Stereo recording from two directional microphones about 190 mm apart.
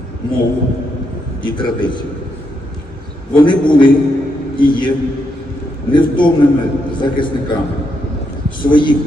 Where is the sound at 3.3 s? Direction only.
25° left (ahead or behind).